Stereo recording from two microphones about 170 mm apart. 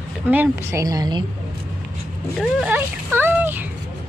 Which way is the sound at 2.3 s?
10° right (ahead or behind).